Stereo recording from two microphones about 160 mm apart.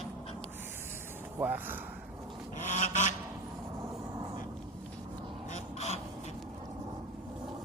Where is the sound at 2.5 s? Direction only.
50° left (ahead or behind).